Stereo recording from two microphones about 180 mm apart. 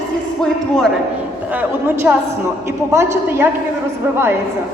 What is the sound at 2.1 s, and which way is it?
A man's voice, 10° right (ahead or behind).